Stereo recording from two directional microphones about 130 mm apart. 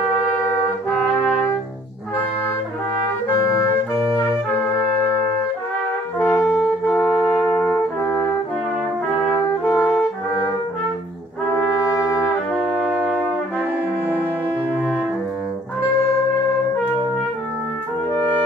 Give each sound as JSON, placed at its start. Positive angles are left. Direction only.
{"t": 0.9, "sound": "trumpet", "side_deg": 10}
{"t": 6.1, "sound": "brass instrument", "side_deg": 20}
{"t": 9.7, "sound": "brass instrument", "side_deg": 15}
{"t": 11.5, "sound": "brass instrument", "side_deg": 20}
{"t": 12.8, "sound": "brass instrument", "side_deg": -10}